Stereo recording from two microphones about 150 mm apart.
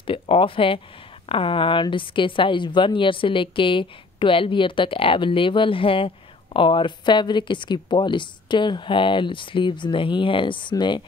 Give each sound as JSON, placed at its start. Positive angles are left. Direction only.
{"t": 0.0, "sound": "a woman's voice", "side_deg": 35}